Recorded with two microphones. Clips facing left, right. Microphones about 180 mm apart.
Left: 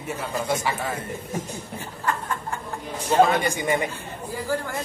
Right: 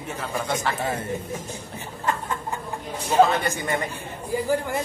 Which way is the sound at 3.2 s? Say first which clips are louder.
Right 1 dB; 10° left (ahead or behind).